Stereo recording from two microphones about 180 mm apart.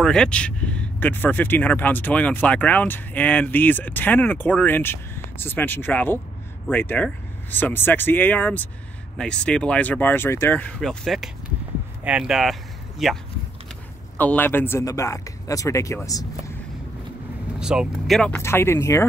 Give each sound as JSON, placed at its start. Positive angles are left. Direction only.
{"t": 0.0, "sound": "speech", "side_deg": 5}
{"t": 17.6, "sound": "speech", "side_deg": -5}
{"t": 18.3, "sound": "speech", "side_deg": 15}